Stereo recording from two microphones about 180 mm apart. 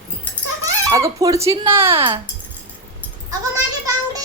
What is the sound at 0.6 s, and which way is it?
Speech, 20° right (ahead or behind).